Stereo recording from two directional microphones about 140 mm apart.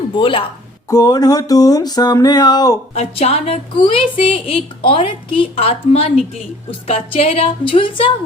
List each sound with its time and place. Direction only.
0.2 s a woman's voice: 40° left (ahead or behind)
0.9 s a sound: 25° left (ahead or behind)
2.9 s a woman's voice: 50° left (ahead or behind)